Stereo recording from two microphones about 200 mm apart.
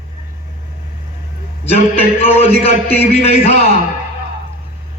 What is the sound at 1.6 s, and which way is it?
A man's voice, 30° left (ahead or behind).